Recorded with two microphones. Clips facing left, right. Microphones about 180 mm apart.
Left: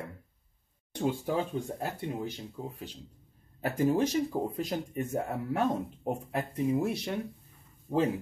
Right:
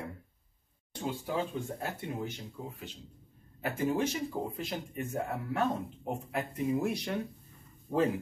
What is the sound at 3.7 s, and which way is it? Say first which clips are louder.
Speech: left 5 dB; 40° left (ahead or behind).